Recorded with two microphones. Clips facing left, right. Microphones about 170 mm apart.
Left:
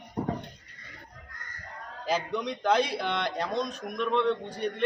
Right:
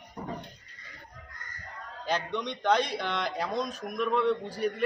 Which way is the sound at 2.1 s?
5° left (ahead or behind).